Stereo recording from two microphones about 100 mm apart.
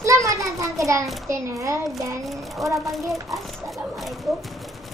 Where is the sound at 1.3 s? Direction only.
30° right (ahead or behind).